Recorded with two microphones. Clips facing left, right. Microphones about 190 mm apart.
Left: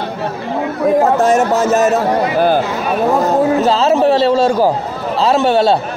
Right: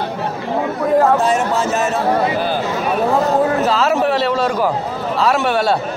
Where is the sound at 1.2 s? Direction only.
45° left (ahead or behind).